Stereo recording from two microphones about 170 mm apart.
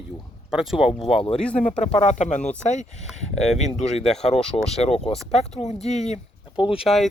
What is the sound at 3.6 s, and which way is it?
Speech, 45° left (ahead or behind).